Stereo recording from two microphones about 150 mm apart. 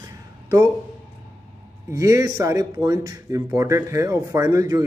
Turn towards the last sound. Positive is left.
turn(degrees=-25)  # may be behind; listen again after turning